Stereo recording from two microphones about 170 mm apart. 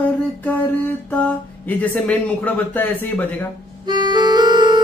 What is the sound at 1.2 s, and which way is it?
Speech, 10° left (ahead or behind).